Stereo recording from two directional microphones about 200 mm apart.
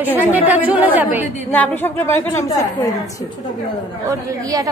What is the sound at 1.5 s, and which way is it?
A woman's voice, 10° left (ahead or behind).